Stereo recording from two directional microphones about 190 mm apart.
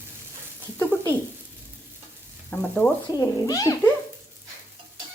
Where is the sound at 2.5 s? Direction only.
5° left (ahead or behind).